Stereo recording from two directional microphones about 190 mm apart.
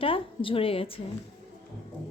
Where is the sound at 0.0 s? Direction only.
30° left (ahead or behind).